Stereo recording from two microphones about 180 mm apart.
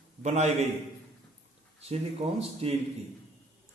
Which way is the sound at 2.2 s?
40° right (ahead or behind).